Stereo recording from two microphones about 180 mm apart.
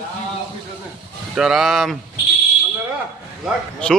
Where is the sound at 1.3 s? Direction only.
5° right (ahead or behind).